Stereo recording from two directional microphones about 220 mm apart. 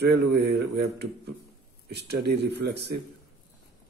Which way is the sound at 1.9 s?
50° right (ahead or behind).